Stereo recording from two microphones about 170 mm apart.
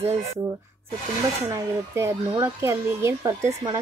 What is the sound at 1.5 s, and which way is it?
Speech, 15° right (ahead or behind).